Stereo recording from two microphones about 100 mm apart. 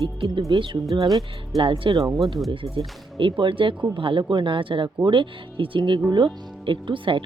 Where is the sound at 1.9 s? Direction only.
35° right (ahead or behind).